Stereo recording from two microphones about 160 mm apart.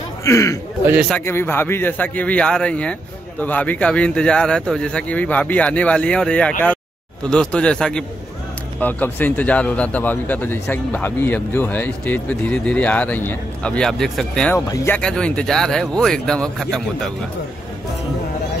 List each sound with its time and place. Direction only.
0.2 s a man's voice: 20° left (ahead or behind); by 14.5 s 5° left (ahead or behind)
14.5 s speech: 15° left (ahead or behind)
15.0 s speech: 5° left (ahead or behind)